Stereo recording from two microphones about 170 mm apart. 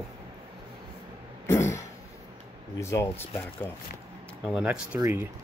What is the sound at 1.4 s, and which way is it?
Cough, 15° left (ahead or behind).